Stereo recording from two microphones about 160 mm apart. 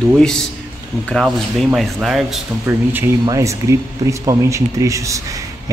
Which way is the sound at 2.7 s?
15° right (ahead or behind).